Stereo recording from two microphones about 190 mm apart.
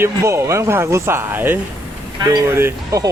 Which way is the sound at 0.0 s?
15° right (ahead or behind).